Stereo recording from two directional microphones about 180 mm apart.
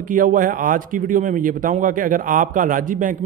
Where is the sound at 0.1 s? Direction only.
50° right (ahead or behind).